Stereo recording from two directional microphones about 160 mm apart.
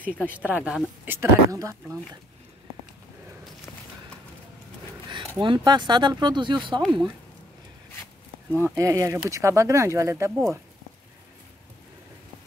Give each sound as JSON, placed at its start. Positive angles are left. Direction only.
{"t": 0.3, "sound": "speech", "side_deg": -10}
{"t": 5.4, "sound": "speech", "side_deg": -30}
{"t": 6.8, "sound": "speech", "side_deg": 0}
{"t": 8.5, "sound": "speech", "side_deg": -15}